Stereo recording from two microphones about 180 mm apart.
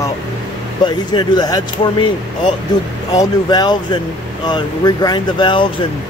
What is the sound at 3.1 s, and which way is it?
Speech, 25° left (ahead or behind).